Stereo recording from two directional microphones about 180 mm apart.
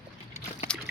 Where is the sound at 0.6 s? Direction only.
5° left (ahead or behind).